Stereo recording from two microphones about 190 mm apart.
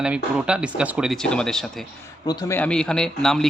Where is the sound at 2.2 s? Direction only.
20° left (ahead or behind).